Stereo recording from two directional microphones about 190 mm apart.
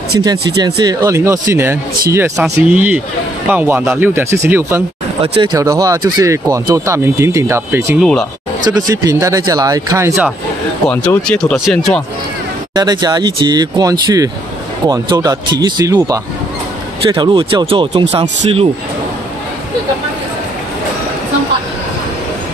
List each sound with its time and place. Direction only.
0.6 s speech: 20° right (ahead or behind)
5.2 s speech: 30° right (ahead or behind); by 8.0 s 15° right (ahead or behind)
8.0 s speech: centre (ahead or behind)
8.6 s speech: 20° right (ahead or behind)
10.9 s speech: 5° left (ahead or behind)
12.7 s speech: 20° right (ahead or behind)
17.1 s speech: 25° right (ahead or behind)